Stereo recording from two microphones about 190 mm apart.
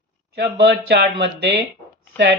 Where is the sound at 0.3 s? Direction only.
65° right (ahead or behind).